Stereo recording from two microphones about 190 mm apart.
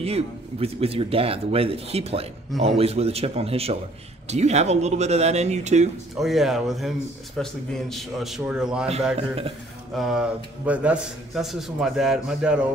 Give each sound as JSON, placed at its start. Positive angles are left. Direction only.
{"t": 0.0, "sound": "speech", "side_deg": -30}
{"t": 6.1, "sound": "a man's voice", "side_deg": 0}
{"t": 9.1, "sound": "speech", "side_deg": -30}
{"t": 9.9, "sound": "a man's voice", "side_deg": 0}